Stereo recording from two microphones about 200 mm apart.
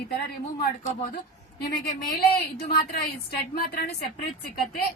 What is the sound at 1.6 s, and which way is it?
A woman's voice, 50° left (ahead or behind).